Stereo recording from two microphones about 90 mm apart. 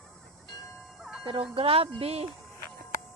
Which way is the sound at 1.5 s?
85° right.